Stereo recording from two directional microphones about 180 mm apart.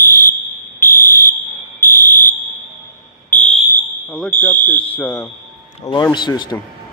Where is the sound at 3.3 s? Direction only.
5° left (ahead or behind).